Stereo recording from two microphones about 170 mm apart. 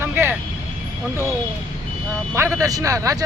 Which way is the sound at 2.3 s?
15° right (ahead or behind).